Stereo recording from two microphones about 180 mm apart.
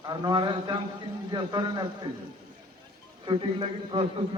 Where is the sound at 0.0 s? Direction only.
25° right (ahead or behind).